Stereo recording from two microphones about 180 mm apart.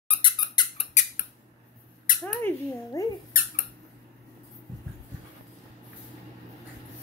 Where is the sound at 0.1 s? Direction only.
25° left (ahead or behind).